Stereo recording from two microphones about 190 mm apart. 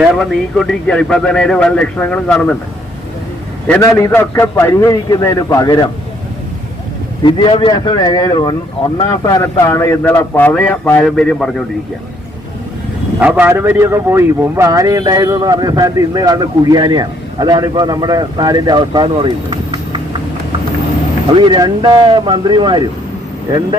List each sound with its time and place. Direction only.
0.0 s speech: centre (ahead or behind)
3.7 s speech: 15° left (ahead or behind)
7.3 s a man's voice: 25° left (ahead or behind); by 11.6 s centre (ahead or behind)
13.1 s a man's voice: 5° right (ahead or behind); by 20.0 s 25° right (ahead or behind)
21.3 s a man's voice: 25° right (ahead or behind)